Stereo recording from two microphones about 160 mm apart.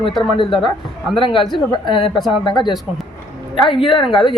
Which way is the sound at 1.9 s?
35° left (ahead or behind).